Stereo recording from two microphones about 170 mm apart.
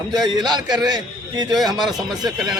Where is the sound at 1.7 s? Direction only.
Centre (ahead or behind).